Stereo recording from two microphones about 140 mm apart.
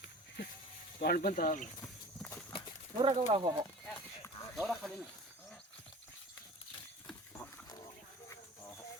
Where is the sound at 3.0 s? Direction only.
40° right (ahead or behind).